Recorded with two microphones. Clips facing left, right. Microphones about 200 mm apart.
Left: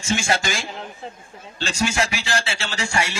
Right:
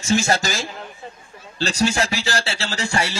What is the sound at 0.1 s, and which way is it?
Speech, 40° right (ahead or behind).